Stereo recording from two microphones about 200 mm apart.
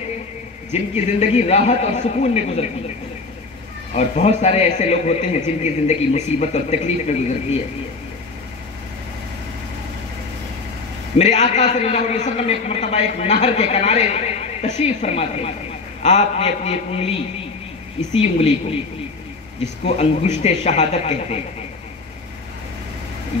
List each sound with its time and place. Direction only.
0.9 s a man's voice: 35° left (ahead or behind)
3.9 s a man's voice: 35° left (ahead or behind)
11.1 s a man's voice: 35° left (ahead or behind)
19.8 s a man's voice: 30° left (ahead or behind)